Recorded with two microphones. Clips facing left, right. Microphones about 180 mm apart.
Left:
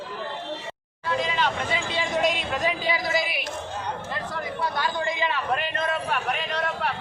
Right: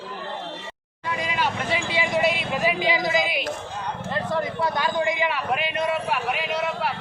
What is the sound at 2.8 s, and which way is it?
Speech, 20° right (ahead or behind).